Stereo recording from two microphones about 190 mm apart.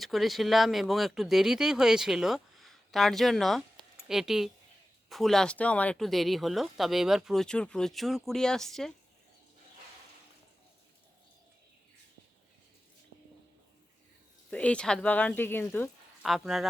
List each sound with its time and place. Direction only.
0.0 s speech: centre (ahead or behind)
14.5 s speech: 5° left (ahead or behind)
16.2 s speech: centre (ahead or behind)